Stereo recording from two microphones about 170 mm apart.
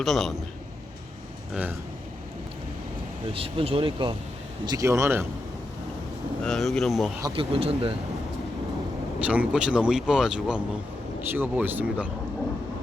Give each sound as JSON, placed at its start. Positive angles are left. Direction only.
{"t": 0.0, "sound": "speech", "side_deg": 0}
{"t": 3.3, "sound": "speech", "side_deg": -35}
{"t": 6.4, "sound": "speech", "side_deg": 0}
{"t": 7.2, "sound": "speech", "side_deg": -25}
{"t": 9.2, "sound": "speech", "side_deg": -10}